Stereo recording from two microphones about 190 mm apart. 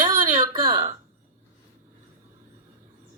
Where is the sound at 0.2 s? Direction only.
45° right (ahead or behind).